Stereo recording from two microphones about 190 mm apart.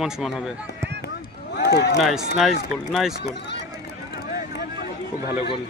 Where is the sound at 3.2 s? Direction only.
65° left (ahead or behind).